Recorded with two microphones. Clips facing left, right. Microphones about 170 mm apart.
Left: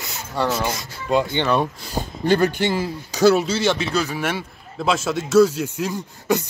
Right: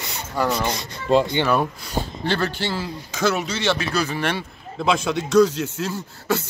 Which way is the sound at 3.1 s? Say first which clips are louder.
Left 7 dB; 35° left (ahead or behind).